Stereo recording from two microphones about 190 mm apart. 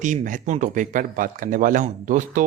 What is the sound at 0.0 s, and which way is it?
Speech, 40° right (ahead or behind).